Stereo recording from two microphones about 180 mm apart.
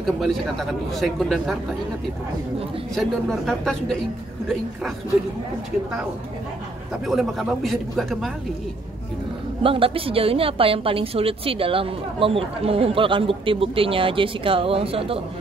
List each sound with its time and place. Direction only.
0.2 s a man's voice: centre (ahead or behind)
2.9 s a man's voice: centre (ahead or behind)
7.1 s a man's voice: centre (ahead or behind)
9.6 s a woman's voice: 30° right (ahead or behind)